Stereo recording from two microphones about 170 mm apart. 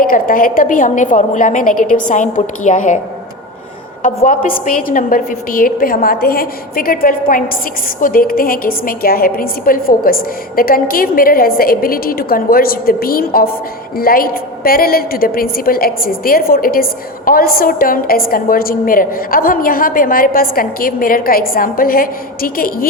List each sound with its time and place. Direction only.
0.0 s a woman's voice: 55° left (ahead or behind)
4.0 s a woman's voice: 55° left (ahead or behind)